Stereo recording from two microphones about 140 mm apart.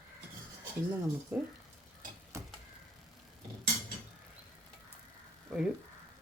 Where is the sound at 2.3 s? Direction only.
20° right (ahead or behind).